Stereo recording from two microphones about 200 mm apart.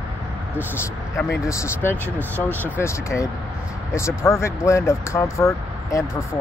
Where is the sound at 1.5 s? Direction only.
15° left (ahead or behind).